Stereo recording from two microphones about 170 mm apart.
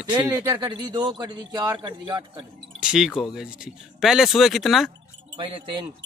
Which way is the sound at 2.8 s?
5° right (ahead or behind).